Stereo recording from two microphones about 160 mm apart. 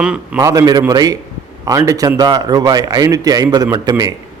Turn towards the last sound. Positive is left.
turn(degrees=-25)  # may be behind; listen again after turning